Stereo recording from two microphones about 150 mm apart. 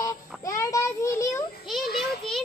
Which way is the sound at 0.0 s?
20° left (ahead or behind).